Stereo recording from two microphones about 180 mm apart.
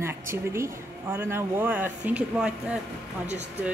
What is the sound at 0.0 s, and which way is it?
Speech, 15° right (ahead or behind).